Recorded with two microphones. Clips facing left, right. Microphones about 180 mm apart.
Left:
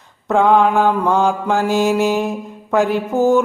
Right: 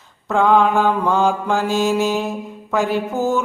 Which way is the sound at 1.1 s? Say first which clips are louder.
Left 1 dB; centre (ahead or behind).